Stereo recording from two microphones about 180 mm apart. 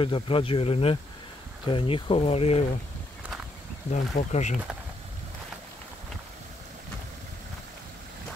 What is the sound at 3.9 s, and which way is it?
Speech, 40° left (ahead or behind).